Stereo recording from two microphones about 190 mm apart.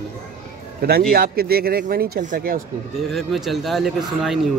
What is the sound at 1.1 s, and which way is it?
Speech, 55° right (ahead or behind).